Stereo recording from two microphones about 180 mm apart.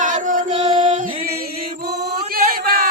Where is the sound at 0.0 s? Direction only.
45° right (ahead or behind).